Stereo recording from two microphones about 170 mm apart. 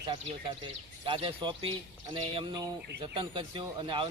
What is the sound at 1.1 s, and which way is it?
Speech, 30° right (ahead or behind).